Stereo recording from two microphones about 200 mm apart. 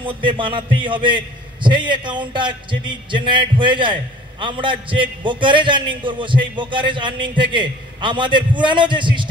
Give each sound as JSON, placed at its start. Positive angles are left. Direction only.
{"t": 0.0, "sound": "a man's voice", "side_deg": -25}